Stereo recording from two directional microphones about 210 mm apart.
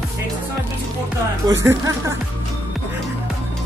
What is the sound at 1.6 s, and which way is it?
Speech, 15° right (ahead or behind).